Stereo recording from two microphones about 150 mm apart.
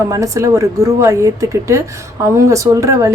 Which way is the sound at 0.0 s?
20° right (ahead or behind).